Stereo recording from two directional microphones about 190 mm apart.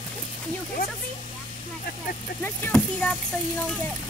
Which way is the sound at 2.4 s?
10° left (ahead or behind).